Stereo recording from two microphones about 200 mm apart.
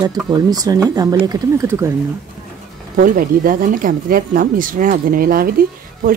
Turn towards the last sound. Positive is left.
turn(degrees=-45)  # may be behind; listen again after turning